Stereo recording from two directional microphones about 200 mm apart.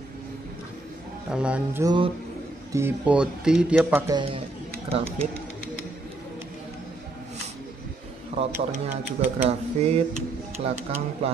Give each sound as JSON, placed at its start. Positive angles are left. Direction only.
{"t": 1.3, "sound": "speech", "side_deg": -5}
{"t": 4.8, "sound": "speech", "side_deg": -30}
{"t": 8.4, "sound": "speech", "side_deg": -30}